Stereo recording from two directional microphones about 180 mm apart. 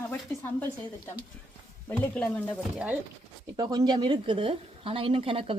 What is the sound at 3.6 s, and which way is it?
A woman's voice, 25° right (ahead or behind).